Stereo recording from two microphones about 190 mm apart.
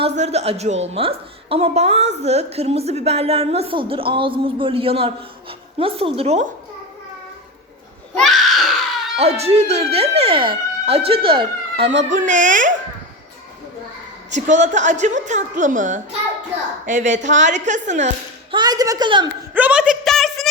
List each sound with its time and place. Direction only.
0.2 s a woman's voice: 35° right (ahead or behind)
8.1 s a sound: centre (ahead or behind)
9.1 s a woman's voice: 30° right (ahead or behind)
12.1 s a woman's voice: 40° right (ahead or behind)
14.3 s a woman's voice: 40° right (ahead or behind)
18.5 s a woman's voice: 20° right (ahead or behind)
19.5 s a sound: 5° right (ahead or behind)